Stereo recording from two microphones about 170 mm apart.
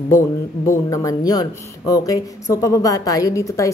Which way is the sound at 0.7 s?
20° left (ahead or behind).